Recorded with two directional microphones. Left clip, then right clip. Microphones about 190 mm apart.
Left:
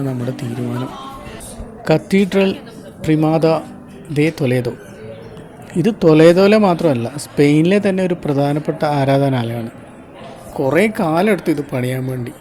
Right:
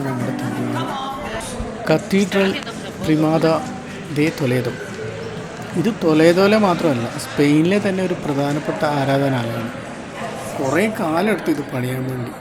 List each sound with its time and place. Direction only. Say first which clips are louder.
1.8 s speech: left 3 dB; centre (ahead or behind)
5.8 s speech: left 5 dB; centre (ahead or behind)
10.7 s speech: left 4 dB; centre (ahead or behind)